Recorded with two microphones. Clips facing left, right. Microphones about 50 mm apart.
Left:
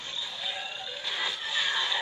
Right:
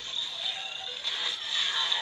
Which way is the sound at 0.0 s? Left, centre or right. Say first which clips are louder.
Even; left.